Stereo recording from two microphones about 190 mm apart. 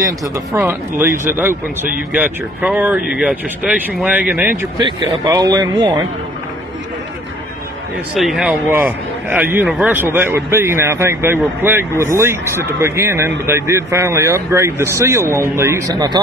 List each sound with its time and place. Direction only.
0.0 s a man's voice: 15° right (ahead or behind)
4.7 s speech: 25° right (ahead or behind)
8.2 s a man's voice: 5° right (ahead or behind); by 16.2 s 20° right (ahead or behind)